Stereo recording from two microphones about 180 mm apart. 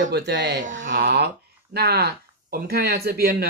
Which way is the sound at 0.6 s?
45° right (ahead or behind).